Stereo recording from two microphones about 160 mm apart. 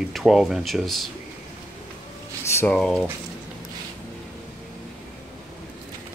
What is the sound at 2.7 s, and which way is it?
Speech, 5° left (ahead or behind).